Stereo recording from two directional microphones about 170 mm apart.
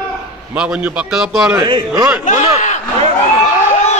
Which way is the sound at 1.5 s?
20° right (ahead or behind).